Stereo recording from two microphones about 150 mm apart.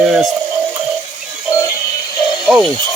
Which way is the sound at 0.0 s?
Centre (ahead or behind).